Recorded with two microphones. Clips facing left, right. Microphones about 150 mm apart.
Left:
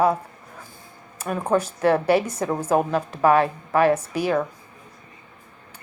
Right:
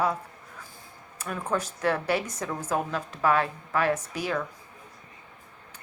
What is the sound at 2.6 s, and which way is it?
Speech, 60° left (ahead or behind).